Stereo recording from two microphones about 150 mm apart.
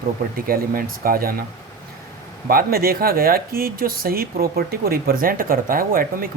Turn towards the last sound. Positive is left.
turn(degrees=-75)  # may be behind; listen again after turning